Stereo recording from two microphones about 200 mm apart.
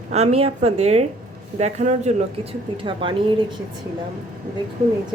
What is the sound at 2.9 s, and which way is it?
Speech, 25° right (ahead or behind).